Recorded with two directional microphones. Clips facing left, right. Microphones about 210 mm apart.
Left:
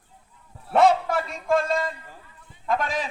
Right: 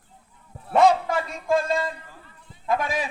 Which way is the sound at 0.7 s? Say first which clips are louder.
Even; 5° left (ahead or behind).